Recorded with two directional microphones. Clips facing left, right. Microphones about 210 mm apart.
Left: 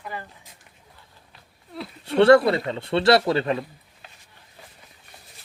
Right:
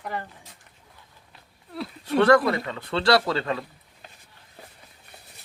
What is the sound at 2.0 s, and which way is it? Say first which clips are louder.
Speech: left 4 dB; 25° left (ahead or behind).